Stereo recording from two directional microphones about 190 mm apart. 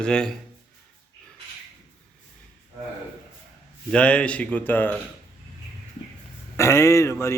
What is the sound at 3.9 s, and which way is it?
Speech, 5° left (ahead or behind).